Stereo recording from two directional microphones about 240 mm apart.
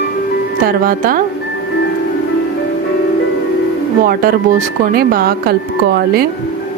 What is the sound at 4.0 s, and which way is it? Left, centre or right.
Speech, right.